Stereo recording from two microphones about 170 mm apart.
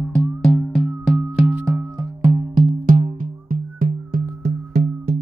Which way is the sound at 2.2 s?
25° right (ahead or behind).